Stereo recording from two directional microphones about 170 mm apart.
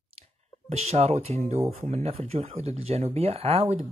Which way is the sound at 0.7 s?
40° right (ahead or behind).